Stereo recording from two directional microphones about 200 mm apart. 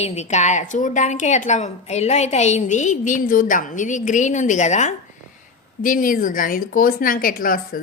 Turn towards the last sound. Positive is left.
turn(degrees=45)  # may be behind; listen again after turning